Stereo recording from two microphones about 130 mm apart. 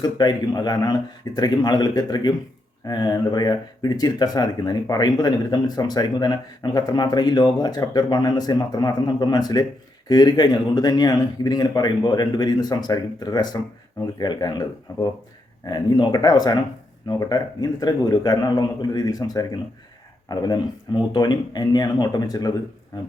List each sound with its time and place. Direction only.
0.0 s speech: 30° left (ahead or behind)